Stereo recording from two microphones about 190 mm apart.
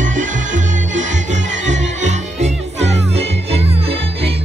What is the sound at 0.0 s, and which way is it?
Music, 40° right (ahead or behind).